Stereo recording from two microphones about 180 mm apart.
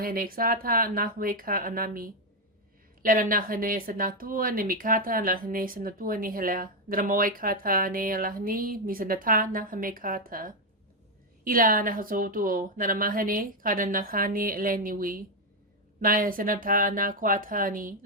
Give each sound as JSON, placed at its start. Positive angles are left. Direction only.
{"t": 0.0, "sound": "a woman's voice", "side_deg": -55}